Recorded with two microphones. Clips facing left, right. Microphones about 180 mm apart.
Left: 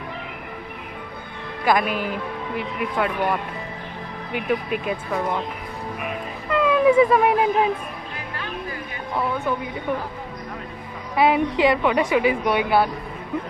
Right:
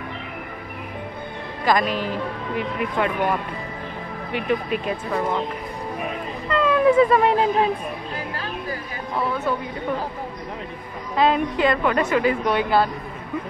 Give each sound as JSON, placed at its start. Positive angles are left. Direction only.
{"t": 1.7, "sound": "a woman's voice", "side_deg": 5}
{"t": 4.3, "sound": "a woman's voice", "side_deg": 5}
{"t": 6.5, "sound": "speech", "side_deg": 10}
{"t": 11.1, "sound": "a woman's voice", "side_deg": 15}